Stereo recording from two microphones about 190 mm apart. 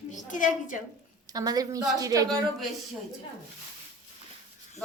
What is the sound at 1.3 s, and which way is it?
A woman's voice, 20° right (ahead or behind).